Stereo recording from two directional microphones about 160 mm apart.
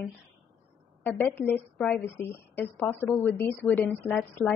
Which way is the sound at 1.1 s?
10° left (ahead or behind).